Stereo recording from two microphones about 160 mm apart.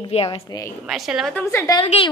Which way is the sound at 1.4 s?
15° left (ahead or behind).